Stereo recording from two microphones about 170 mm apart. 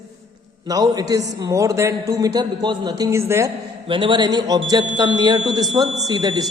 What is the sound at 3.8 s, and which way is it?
A man's voice, 30° right (ahead or behind).